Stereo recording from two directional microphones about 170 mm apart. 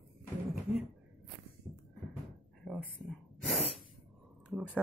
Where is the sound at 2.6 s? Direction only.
5° left (ahead or behind).